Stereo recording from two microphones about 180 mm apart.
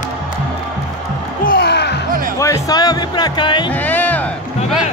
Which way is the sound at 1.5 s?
65° left (ahead or behind).